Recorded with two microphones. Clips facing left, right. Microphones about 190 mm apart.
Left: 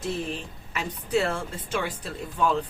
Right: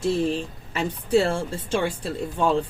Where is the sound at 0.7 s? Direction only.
30° right (ahead or behind).